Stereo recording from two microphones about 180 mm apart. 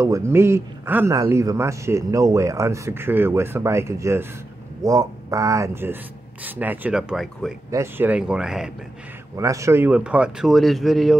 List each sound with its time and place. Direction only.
0.0 s a man's voice: 15° right (ahead or behind)
7.7 s speech: 15° right (ahead or behind)
9.4 s speech: 15° right (ahead or behind); by 11.1 s centre (ahead or behind)